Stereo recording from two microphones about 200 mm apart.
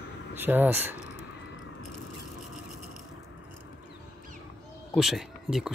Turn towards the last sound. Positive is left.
turn(degrees=0)  # may be behind; listen again after turning